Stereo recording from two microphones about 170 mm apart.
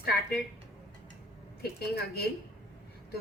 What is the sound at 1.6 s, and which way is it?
Speech, 70° left (ahead or behind).